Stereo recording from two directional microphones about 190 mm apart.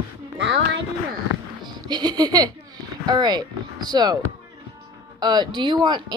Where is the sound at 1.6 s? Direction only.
20° right (ahead or behind).